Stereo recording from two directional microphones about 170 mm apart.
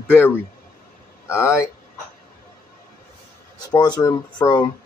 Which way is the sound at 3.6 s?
25° left (ahead or behind).